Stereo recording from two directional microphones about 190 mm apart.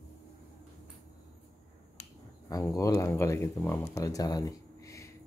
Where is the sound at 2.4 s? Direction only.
20° left (ahead or behind).